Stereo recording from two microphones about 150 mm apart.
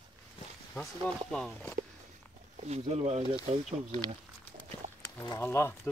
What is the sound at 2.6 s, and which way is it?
Speech, 45° right (ahead or behind).